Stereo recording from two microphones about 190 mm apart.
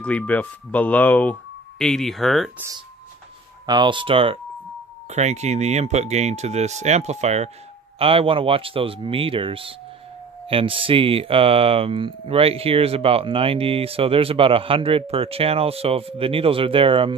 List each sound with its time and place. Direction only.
0.0 s speech: 5° left (ahead or behind)
3.6 s speech: 25° right (ahead or behind)